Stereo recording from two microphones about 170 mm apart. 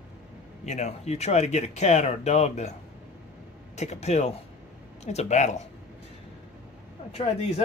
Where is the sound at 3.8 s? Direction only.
40° left (ahead or behind).